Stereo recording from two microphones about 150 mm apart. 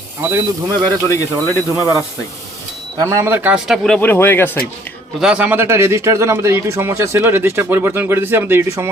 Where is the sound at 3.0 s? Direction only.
20° right (ahead or behind).